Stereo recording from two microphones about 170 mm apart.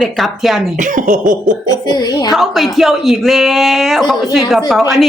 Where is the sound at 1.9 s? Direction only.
25° left (ahead or behind).